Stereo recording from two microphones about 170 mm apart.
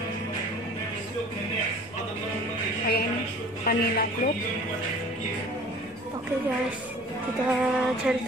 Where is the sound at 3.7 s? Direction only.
65° left (ahead or behind).